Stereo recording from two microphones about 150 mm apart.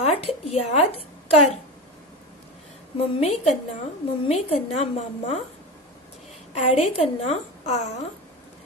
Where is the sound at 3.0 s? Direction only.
45° left (ahead or behind).